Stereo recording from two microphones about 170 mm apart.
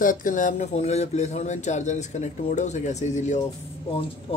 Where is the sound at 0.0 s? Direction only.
50° left (ahead or behind).